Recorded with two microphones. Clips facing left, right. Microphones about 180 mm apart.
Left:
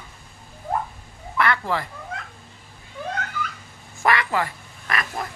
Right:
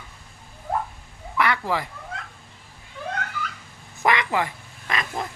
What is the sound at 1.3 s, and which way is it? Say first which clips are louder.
Speech: left 1 dB; 15° right (ahead or behind).